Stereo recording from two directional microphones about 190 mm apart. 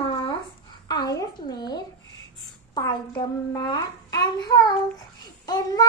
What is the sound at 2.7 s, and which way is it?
A child's voice, 25° left (ahead or behind).